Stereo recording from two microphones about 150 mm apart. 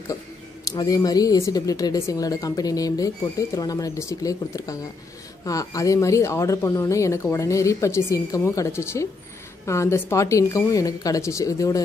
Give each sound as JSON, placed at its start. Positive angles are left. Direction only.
{"t": 0.7, "sound": "speech", "side_deg": 25}